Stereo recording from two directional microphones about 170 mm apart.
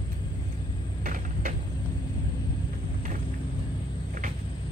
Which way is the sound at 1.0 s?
50° right (ahead or behind).